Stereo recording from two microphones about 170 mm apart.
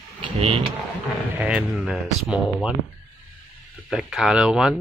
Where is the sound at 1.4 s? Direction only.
5° right (ahead or behind).